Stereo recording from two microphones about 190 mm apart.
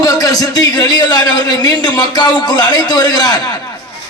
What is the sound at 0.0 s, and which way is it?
A man's voice, 20° left (ahead or behind).